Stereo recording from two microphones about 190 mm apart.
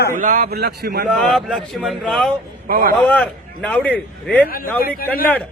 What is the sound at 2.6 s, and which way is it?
Speech, 50° right (ahead or behind).